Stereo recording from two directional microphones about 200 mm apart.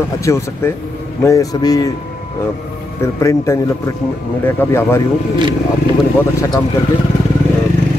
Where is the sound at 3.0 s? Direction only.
15° left (ahead or behind).